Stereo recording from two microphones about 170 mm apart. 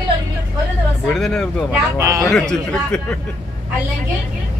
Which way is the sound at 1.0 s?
5° left (ahead or behind).